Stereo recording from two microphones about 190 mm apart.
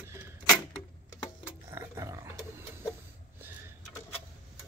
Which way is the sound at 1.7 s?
15° right (ahead or behind).